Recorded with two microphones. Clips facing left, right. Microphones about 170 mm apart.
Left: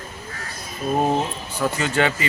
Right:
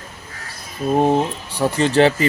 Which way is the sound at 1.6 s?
30° right (ahead or behind).